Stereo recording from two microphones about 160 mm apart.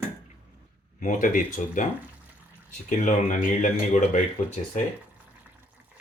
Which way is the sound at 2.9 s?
55° left (ahead or behind).